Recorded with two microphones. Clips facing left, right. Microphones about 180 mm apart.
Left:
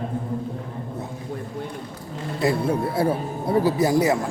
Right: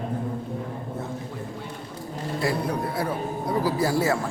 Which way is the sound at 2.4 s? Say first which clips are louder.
Left 5 dB; 25° left (ahead or behind).